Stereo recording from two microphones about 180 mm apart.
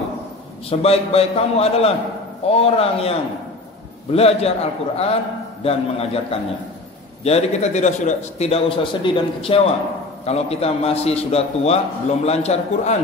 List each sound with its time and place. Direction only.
0.7 s a man's voice: 35° left (ahead or behind)